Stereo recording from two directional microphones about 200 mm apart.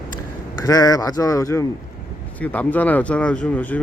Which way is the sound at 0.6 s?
20° left (ahead or behind).